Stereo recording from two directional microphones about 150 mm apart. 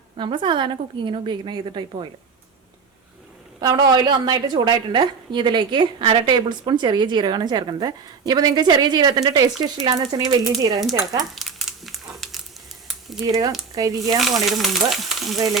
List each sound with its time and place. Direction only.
0.2 s a woman's voice: 30° right (ahead or behind)
3.6 s a woman's voice: 30° right (ahead or behind)
11.3 s crumpling: centre (ahead or behind)
12.9 s a sound: centre (ahead or behind)
13.7 s a woman's voice: 25° right (ahead or behind)
14.4 s frying: centre (ahead or behind)